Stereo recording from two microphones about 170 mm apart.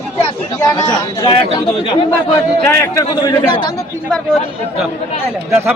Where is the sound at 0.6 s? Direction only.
25° left (ahead or behind).